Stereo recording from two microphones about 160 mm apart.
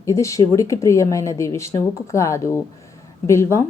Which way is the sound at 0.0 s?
20° left (ahead or behind).